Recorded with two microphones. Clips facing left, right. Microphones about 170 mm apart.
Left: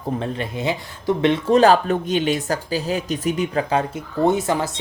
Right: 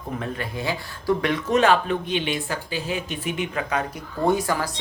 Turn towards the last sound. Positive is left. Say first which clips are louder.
# left 2 dB
turn(degrees=25)  # may be behind; listen again after turning